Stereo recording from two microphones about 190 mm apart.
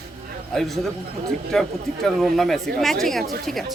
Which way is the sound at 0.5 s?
Centre (ahead or behind).